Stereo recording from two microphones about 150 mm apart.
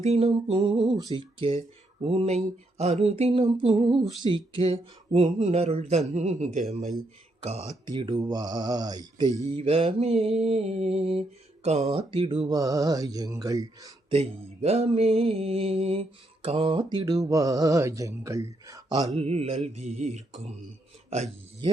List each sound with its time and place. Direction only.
0.0 s speech: 45° right (ahead or behind)
0.5 s mantra: 35° right (ahead or behind)
6.1 s speech: 50° right (ahead or behind)
7.9 s mantra: 30° right (ahead or behind)
9.2 s music: 20° left (ahead or behind)
9.5 s mantra: 40° right (ahead or behind); by 13.9 s 25° right (ahead or behind)
14.1 s speech: 45° right (ahead or behind)
15.4 s mantra: 40° right (ahead or behind); by 19.0 s 20° right (ahead or behind)
19.1 s speech: 45° right (ahead or behind)